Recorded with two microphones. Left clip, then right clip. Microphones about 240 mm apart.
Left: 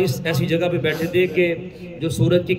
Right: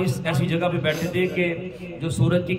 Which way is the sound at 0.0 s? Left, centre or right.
Centre.